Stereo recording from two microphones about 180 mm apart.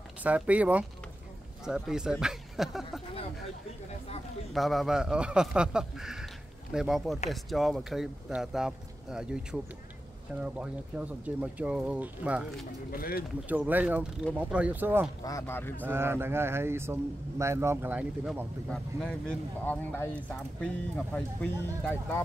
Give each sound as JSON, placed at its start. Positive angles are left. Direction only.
{"t": 0.2, "sound": "a man's voice", "side_deg": -10}
{"t": 4.6, "sound": "a man's voice", "side_deg": 0}
{"t": 12.9, "sound": "speech", "side_deg": 55}
{"t": 13.5, "sound": "a man's voice", "side_deg": -10}
{"t": 15.2, "sound": "speech", "side_deg": 15}
{"t": 15.8, "sound": "a man's voice", "side_deg": -15}
{"t": 18.7, "sound": "speech", "side_deg": 5}